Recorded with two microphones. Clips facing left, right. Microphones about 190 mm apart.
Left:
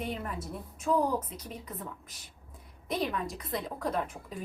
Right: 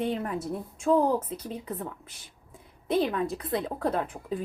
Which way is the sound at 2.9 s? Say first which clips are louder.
Right 6 dB; 30° right (ahead or behind).